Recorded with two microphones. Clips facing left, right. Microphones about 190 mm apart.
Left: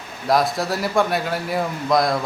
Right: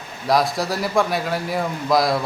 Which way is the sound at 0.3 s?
Centre (ahead or behind).